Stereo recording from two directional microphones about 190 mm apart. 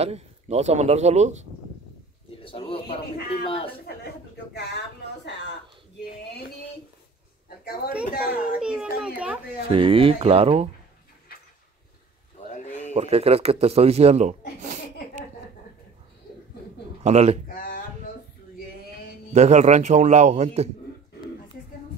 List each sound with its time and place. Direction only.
0.0 s speech: 35° right (ahead or behind)
2.4 s speech: 30° left (ahead or behind)
4.6 s speech: 60° left (ahead or behind)
7.4 s a sound: 50° left (ahead or behind)
8.1 s a child's voice: 50° left (ahead or behind)
8.5 s a child's voice: 5° right (ahead or behind)
9.7 s speech: 30° right (ahead or behind)
12.4 s a sound: 40° left (ahead or behind)
12.9 s speech: 30° right (ahead or behind)
14.6 s a sound: 40° right (ahead or behind)
17.0 s speech: 35° right (ahead or behind)
19.3 s speech: 35° right (ahead or behind)